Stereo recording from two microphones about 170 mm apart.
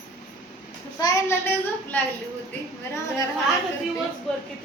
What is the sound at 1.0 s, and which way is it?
Speech, 15° left (ahead or behind).